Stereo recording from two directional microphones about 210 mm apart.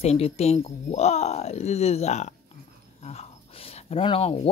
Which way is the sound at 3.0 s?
30° left (ahead or behind).